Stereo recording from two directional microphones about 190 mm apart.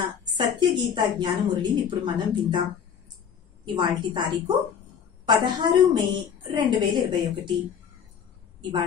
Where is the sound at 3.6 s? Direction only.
25° right (ahead or behind).